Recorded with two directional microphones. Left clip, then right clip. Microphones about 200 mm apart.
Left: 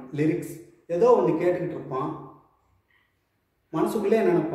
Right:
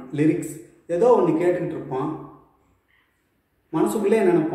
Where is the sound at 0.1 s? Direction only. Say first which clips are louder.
Right 4 dB; 10° left (ahead or behind).